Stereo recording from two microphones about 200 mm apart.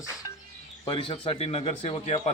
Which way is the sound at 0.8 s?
20° left (ahead or behind).